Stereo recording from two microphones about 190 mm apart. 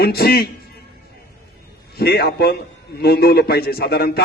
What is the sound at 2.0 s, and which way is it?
A man's voice, 55° left (ahead or behind).